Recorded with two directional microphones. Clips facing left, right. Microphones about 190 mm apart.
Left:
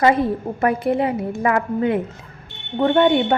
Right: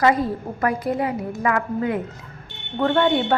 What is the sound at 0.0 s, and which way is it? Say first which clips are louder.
A woman's voice: left 2 dB; 25° left (ahead or behind).